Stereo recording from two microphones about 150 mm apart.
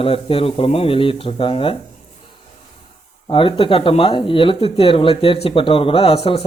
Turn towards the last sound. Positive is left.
turn(degrees=40)  # may be behind; listen again after turning